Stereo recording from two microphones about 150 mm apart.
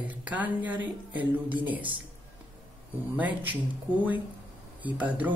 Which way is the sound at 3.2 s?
10° right (ahead or behind).